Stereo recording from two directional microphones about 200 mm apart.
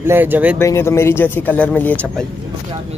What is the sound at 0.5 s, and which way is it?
Speech, 10° left (ahead or behind).